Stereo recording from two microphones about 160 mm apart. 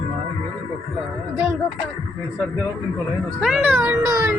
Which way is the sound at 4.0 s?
20° right (ahead or behind).